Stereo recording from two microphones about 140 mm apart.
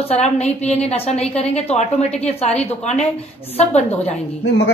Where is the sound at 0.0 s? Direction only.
50° left (ahead or behind).